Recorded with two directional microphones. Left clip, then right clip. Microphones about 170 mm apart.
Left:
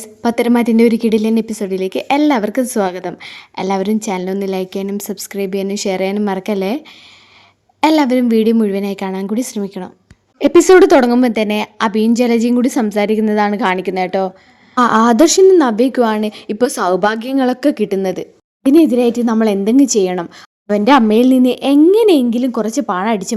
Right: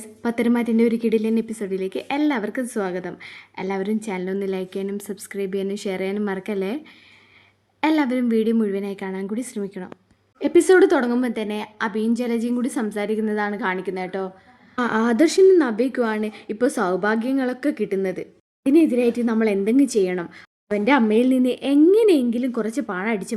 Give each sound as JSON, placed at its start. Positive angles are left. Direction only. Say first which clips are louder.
{"t": 0.0, "sound": "a woman's voice", "louder": "left 8 dB", "side_deg": 35}
{"t": 10.3, "sound": "a woman's voice", "louder": "left 8 dB", "side_deg": 40}